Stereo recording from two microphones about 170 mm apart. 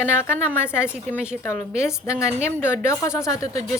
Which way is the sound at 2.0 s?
15° left (ahead or behind).